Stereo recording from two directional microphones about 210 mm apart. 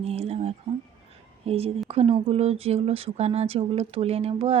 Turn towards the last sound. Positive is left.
turn(degrees=-30)  # may be behind; listen again after turning